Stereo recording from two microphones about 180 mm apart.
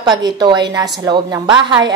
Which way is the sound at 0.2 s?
25° right (ahead or behind).